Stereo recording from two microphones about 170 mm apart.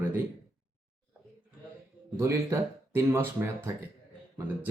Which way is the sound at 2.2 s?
15° right (ahead or behind).